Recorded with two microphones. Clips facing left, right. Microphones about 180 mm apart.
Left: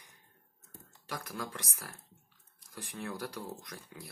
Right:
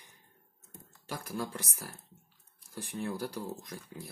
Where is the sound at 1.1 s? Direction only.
30° right (ahead or behind).